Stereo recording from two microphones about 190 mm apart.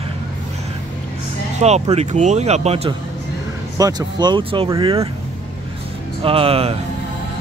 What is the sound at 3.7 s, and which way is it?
Speech, 20° right (ahead or behind).